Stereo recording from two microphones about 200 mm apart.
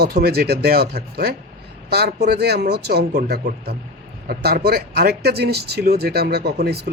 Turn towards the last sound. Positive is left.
turn(degrees=-55)  # may be behind; listen again after turning